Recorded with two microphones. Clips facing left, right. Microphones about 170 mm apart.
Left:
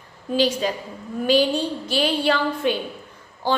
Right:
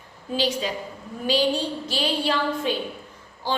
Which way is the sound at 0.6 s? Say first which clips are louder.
Left 4 dB; 45° left (ahead or behind).